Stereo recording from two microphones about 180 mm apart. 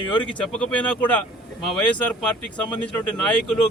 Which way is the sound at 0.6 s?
5° left (ahead or behind).